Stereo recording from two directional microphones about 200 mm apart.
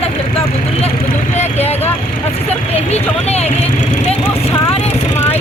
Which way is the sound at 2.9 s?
30° left (ahead or behind).